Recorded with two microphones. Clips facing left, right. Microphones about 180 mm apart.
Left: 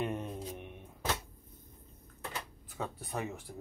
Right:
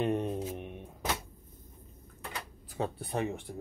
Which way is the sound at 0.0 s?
30° right (ahead or behind).